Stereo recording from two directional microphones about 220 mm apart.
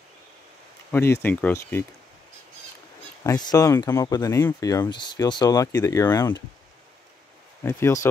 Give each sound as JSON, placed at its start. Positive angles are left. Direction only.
{"t": 0.9, "sound": "speech", "side_deg": 10}
{"t": 3.3, "sound": "speech", "side_deg": 15}
{"t": 7.6, "sound": "speech", "side_deg": 15}